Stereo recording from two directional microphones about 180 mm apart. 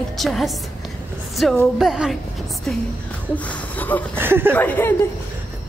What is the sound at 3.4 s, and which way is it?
Speech, 10° left (ahead or behind).